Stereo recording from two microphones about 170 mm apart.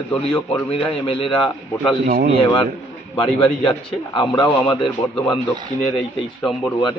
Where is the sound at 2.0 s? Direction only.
60° right (ahead or behind).